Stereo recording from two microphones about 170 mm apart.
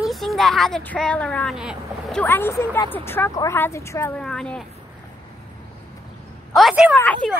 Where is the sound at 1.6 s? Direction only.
5° right (ahead or behind).